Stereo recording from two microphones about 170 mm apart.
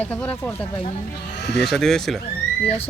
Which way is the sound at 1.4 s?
85° left.